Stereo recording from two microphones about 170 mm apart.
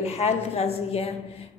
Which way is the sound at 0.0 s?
35° left (ahead or behind).